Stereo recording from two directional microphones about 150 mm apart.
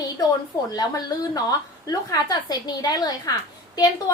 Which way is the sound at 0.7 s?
25° left (ahead or behind).